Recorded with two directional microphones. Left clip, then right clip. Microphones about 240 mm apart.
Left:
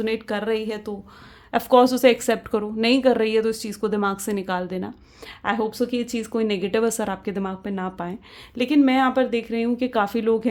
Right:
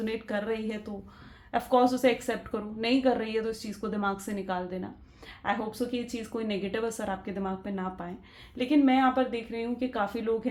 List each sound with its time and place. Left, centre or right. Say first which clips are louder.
0.0 s a woman's voice: left 7 dB; left